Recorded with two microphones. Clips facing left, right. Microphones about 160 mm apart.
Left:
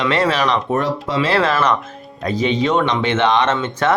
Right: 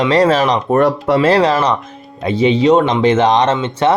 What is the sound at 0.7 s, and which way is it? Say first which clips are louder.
Speech: right 7 dB; 60° right (ahead or behind).